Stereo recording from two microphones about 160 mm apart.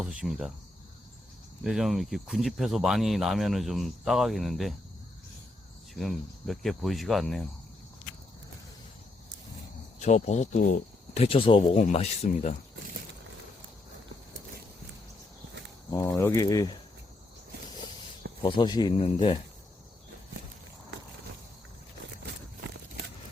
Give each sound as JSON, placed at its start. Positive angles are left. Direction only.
{"t": 0.0, "sound": "speech", "side_deg": -5}
{"t": 1.6, "sound": "speech", "side_deg": 0}
{"t": 5.9, "sound": "speech", "side_deg": 0}
{"t": 10.0, "sound": "speech", "side_deg": 45}
{"t": 15.9, "sound": "speech", "side_deg": 20}
{"t": 18.4, "sound": "speech", "side_deg": 30}